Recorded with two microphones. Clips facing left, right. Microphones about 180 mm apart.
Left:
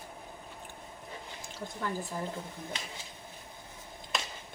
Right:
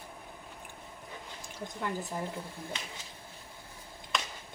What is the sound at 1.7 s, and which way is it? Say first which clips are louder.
Speech: even; 20° right (ahead or behind).